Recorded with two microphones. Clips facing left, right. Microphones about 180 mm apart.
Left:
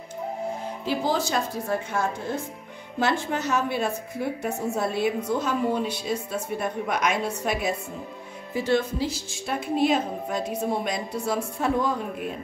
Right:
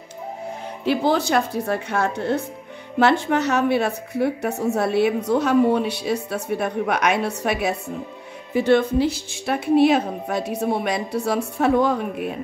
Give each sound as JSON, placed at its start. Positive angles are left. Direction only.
{"t": 0.8, "sound": "a woman's voice", "side_deg": -65}